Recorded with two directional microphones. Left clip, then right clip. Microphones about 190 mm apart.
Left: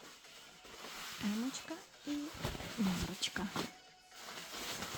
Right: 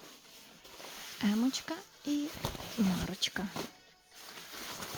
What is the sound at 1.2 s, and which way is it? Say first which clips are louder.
Speech: right 9 dB; 50° right (ahead or behind).